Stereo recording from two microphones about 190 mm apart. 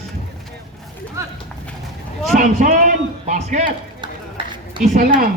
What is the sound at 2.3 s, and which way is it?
Speech, 45° right (ahead or behind).